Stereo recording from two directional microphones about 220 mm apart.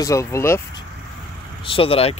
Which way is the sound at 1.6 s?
25° left (ahead or behind).